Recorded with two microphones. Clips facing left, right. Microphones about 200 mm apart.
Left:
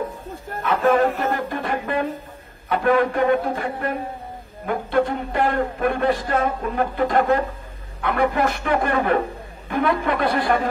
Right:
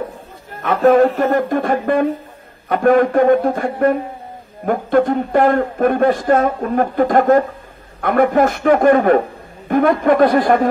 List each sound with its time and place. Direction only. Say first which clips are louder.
0.6 s speech: right 6 dB; 45° right (ahead or behind)